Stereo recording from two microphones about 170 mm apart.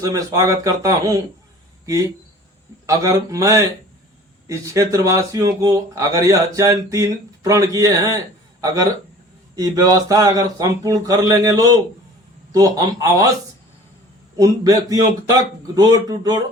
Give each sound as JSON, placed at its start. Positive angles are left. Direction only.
{"t": 0.0, "sound": "speech", "side_deg": -20}
{"t": 2.8, "sound": "speech", "side_deg": -20}
{"t": 14.3, "sound": "speech", "side_deg": -20}